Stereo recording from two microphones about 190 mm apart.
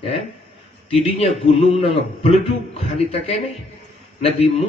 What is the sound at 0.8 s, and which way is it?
A man's voice, 35° left (ahead or behind).